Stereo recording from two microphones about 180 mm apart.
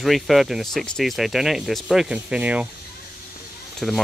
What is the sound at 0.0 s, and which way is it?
Speech, centre (ahead or behind).